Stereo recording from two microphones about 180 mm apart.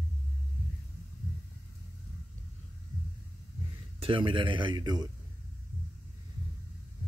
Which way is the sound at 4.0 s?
30° right (ahead or behind).